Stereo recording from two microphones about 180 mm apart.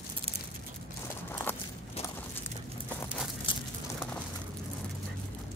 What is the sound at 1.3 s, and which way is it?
Walk, 10° left (ahead or behind).